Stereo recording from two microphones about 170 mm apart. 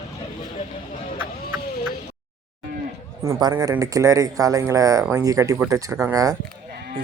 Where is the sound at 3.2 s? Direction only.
20° right (ahead or behind).